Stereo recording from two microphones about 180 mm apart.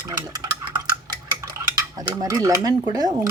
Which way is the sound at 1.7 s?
20° right (ahead or behind).